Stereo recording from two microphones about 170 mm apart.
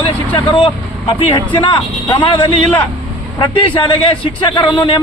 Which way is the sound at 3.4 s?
30° left (ahead or behind).